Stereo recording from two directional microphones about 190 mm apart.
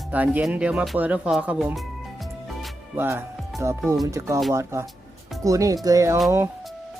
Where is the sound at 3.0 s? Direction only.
10° right (ahead or behind).